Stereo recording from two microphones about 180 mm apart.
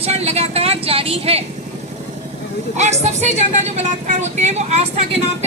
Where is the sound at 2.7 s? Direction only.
40° right (ahead or behind).